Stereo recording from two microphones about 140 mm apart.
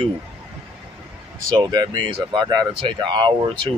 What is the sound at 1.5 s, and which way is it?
Speech, 30° right (ahead or behind).